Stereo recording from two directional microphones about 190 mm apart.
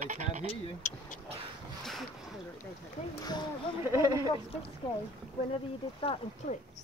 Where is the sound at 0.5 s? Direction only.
40° left (ahead or behind).